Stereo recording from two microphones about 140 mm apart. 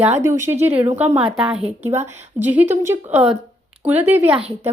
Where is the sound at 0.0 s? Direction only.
15° right (ahead or behind).